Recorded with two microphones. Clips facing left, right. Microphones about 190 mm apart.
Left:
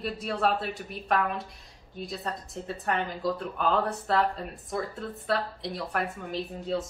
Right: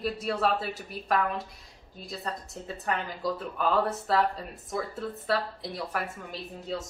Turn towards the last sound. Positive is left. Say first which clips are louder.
# left 5 dB
turn(degrees=0)  # may be behind; listen again after turning